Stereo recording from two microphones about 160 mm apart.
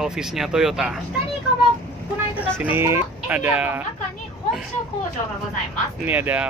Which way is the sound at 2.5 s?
15° right (ahead or behind).